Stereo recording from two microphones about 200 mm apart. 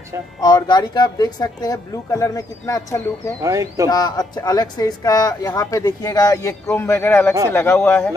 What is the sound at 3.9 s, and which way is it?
Speech, 20° left (ahead or behind).